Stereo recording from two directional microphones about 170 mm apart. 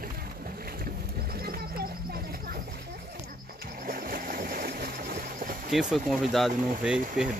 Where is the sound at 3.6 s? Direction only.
60° right (ahead or behind).